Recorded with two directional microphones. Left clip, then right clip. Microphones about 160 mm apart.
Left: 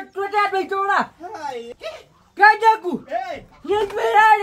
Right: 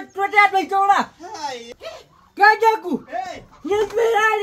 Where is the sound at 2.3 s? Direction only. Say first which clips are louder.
Left 1 dB; 15° left (ahead or behind).